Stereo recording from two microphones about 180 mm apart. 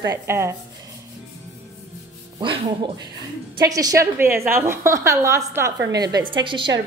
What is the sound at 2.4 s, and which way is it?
A woman's voice, 25° right (ahead or behind).